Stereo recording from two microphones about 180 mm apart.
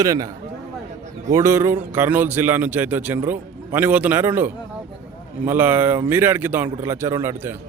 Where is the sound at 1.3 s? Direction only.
15° right (ahead or behind).